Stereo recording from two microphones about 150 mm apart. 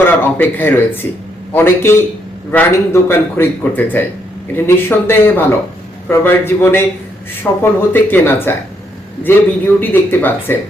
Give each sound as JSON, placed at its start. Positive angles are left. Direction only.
{"t": 0.0, "sound": "a man's voice", "side_deg": 10}